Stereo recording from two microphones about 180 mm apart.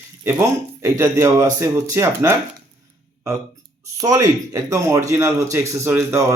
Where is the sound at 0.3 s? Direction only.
15° right (ahead or behind).